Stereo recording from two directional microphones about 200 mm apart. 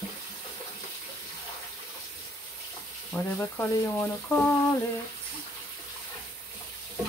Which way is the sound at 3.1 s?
10° left (ahead or behind).